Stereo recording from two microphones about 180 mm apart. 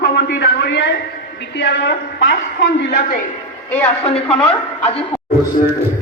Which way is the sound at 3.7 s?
10° left (ahead or behind).